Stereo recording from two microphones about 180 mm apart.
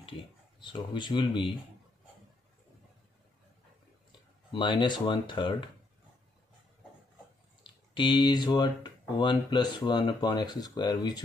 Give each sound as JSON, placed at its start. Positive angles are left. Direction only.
{"t": 0.6, "sound": "speech", "side_deg": 25}
{"t": 4.5, "sound": "speech", "side_deg": 25}
{"t": 7.6, "sound": "speech", "side_deg": 25}